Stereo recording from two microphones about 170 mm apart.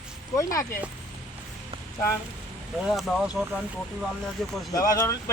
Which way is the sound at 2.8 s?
Centre (ahead or behind).